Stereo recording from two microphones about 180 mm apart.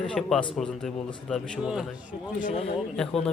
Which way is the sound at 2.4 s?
35° left (ahead or behind).